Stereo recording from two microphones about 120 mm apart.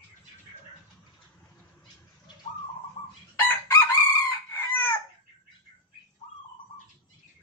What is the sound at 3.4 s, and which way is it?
Chicken, 20° left (ahead or behind).